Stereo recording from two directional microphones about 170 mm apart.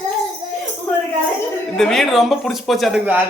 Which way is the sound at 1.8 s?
Centre (ahead or behind).